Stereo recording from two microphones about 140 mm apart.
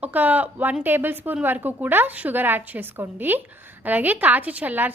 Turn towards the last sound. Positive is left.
turn(degrees=-10)  # may be behind; listen again after turning